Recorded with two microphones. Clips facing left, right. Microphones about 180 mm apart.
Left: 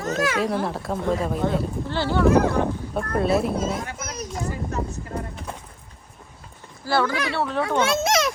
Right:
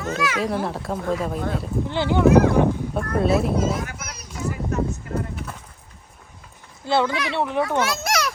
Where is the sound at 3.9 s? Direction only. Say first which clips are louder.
Left 4 dB; 45° left (ahead or behind).